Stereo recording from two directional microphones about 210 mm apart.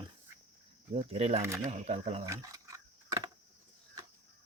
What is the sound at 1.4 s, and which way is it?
Speech, 15° right (ahead or behind).